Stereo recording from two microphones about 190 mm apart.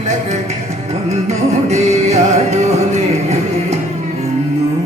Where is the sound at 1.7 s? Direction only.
35° right (ahead or behind).